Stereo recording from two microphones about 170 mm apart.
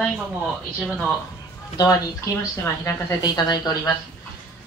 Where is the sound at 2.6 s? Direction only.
20° left (ahead or behind).